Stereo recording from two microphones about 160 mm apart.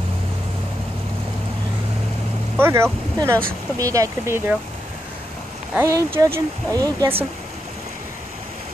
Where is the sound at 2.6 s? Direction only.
15° right (ahead or behind).